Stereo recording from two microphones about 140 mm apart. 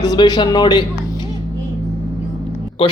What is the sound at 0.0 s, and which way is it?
Speech, 30° left (ahead or behind).